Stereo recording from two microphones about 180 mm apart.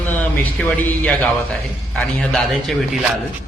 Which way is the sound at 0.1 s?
10° left (ahead or behind).